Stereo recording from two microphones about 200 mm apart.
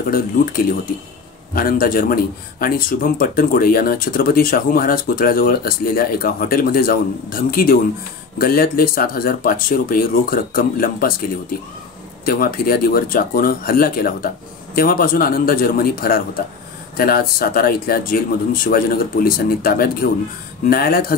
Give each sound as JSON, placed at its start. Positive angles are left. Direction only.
{"t": 0.1, "sound": "speech", "side_deg": 45}
{"t": 12.3, "sound": "speech", "side_deg": 45}